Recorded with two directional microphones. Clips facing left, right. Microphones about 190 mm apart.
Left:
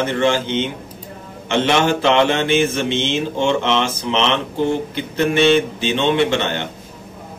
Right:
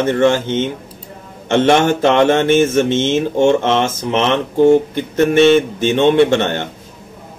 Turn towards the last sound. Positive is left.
turn(degrees=-50)  # may be behind; listen again after turning